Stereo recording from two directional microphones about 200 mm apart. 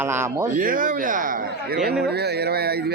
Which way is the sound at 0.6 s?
45° right (ahead or behind).